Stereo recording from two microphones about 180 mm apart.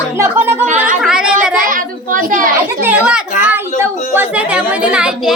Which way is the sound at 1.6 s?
50° right (ahead or behind).